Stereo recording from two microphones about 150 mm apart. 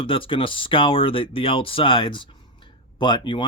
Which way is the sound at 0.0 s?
35° left (ahead or behind).